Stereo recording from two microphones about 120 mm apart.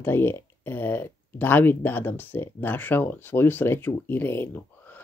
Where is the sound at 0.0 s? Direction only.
20° left (ahead or behind).